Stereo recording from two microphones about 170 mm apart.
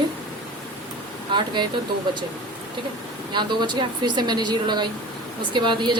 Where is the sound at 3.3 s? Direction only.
25° right (ahead or behind).